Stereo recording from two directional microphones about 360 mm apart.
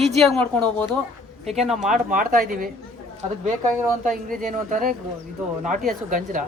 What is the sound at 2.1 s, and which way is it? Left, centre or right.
Speech, right.